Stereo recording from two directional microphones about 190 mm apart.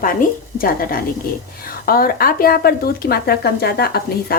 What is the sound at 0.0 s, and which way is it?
Speech, 45° left (ahead or behind).